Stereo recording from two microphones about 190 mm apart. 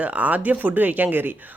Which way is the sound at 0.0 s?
10° right (ahead or behind).